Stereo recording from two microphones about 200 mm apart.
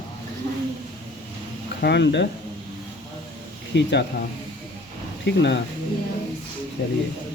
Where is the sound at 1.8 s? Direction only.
60° left (ahead or behind).